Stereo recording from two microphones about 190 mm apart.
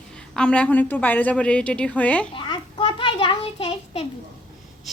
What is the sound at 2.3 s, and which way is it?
A child's voice, 25° left (ahead or behind).